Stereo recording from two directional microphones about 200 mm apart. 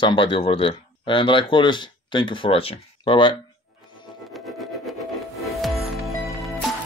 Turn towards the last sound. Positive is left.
turn(degrees=0)  # may be behind; listen again after turning